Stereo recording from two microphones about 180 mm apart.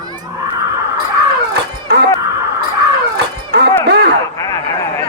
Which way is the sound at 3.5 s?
70° right (ahead or behind).